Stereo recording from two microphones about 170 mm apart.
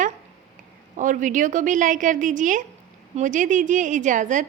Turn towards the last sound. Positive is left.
turn(degrees=-50)  # may be behind; listen again after turning